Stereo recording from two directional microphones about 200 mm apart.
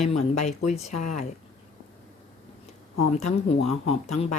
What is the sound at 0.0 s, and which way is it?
Speech, 35° left (ahead or behind).